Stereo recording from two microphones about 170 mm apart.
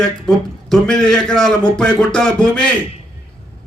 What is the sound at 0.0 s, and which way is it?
A man's voice, 5° left (ahead or behind).